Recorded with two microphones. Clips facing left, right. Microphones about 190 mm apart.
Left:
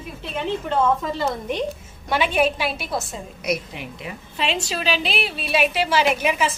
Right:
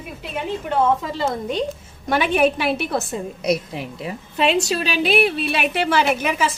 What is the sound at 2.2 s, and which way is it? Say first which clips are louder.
Speech: right 3 dB; 50° right (ahead or behind).